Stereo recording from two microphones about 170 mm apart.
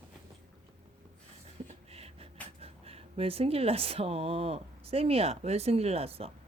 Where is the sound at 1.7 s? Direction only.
35° right (ahead or behind).